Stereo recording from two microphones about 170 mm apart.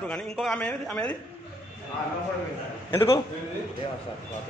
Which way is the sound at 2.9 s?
15° left (ahead or behind).